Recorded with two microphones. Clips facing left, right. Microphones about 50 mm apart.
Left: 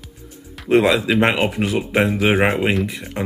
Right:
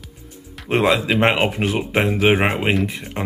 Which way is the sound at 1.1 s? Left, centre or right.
Right.